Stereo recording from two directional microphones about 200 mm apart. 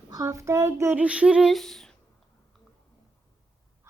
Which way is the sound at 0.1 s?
15° right (ahead or behind).